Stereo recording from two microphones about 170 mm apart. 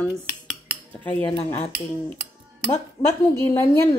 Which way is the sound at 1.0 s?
10° left (ahead or behind).